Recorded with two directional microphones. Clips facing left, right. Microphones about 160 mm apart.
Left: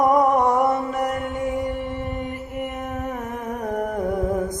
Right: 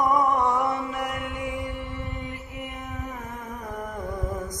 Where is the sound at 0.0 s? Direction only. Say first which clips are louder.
Left 5 dB; 50° left (ahead or behind).